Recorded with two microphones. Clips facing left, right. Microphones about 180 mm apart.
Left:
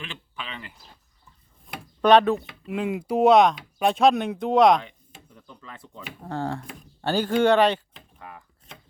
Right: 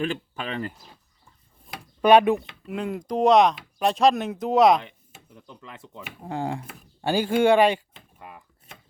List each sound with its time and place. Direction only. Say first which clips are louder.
0.0 s speech: right 10 dB; 45° right (ahead or behind)
1.7 s a sound: right 1 dB; 10° right (ahead or behind)
2.6 s speech: left 3 dB; centre (ahead or behind); by 8.4 s 15° right (ahead or behind)